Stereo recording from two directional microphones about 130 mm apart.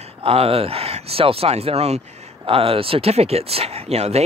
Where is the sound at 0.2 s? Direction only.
45° right (ahead or behind).